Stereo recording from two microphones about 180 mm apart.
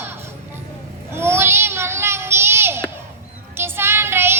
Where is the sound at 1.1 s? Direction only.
15° right (ahead or behind).